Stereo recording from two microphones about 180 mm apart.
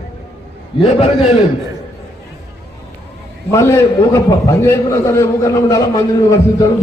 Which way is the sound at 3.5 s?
15° left (ahead or behind).